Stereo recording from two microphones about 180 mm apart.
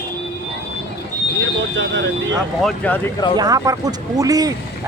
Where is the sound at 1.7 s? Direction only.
80° right.